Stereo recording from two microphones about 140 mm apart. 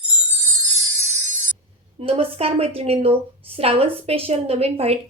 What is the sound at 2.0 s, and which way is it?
A woman's voice, 45° right (ahead or behind).